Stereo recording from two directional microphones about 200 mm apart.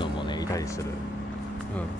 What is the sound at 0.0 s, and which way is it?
Music, 20° left (ahead or behind).